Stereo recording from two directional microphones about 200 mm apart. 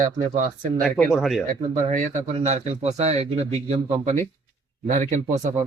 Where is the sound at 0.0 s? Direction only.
40° right (ahead or behind).